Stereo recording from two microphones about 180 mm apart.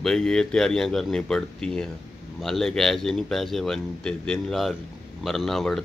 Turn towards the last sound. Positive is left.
turn(degrees=0)  # may be behind; listen again after turning